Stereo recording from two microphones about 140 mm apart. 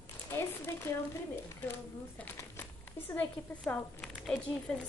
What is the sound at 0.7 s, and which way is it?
Speech, 15° left (ahead or behind).